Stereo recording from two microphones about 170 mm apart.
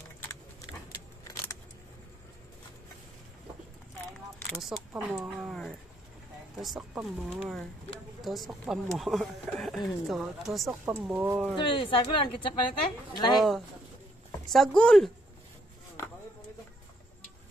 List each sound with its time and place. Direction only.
1.2 s keys jangling: 20° left (ahead or behind)
4.5 s speech: centre (ahead or behind)
11.5 s speech: 30° left (ahead or behind)
14.5 s speech: centre (ahead or behind)